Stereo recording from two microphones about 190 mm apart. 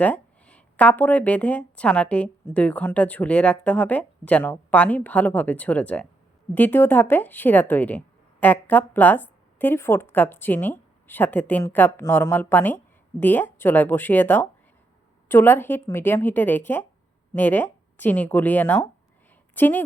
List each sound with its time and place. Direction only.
0.0 s speech: 5° left (ahead or behind)